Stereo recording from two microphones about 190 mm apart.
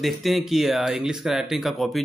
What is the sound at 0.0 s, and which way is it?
Speech, centre (ahead or behind).